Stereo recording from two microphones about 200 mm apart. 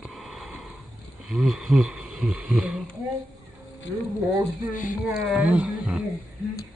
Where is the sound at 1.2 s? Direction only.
Centre (ahead or behind).